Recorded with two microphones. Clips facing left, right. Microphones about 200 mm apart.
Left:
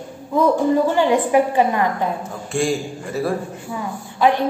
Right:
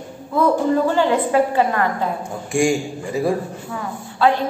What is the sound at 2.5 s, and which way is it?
Speech, 15° right (ahead or behind).